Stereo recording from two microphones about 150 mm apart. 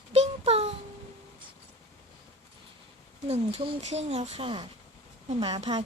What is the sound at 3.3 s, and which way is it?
A woman's voice, 40° right (ahead or behind).